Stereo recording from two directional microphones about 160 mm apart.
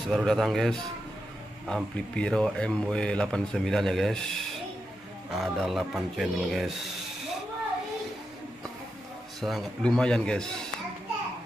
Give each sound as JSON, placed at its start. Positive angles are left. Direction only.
{"t": 0.1, "sound": "a man's voice", "side_deg": 0}
{"t": 9.4, "sound": "a man's voice", "side_deg": 0}